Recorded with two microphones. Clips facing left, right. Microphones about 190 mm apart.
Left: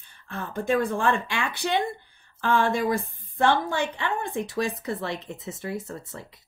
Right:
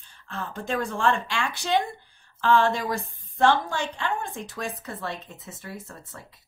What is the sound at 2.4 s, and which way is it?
Speech, 50° left (ahead or behind).